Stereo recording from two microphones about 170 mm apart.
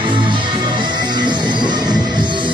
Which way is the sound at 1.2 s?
25° right (ahead or behind).